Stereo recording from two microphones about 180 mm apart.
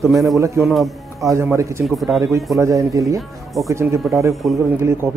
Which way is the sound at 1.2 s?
15° right (ahead or behind).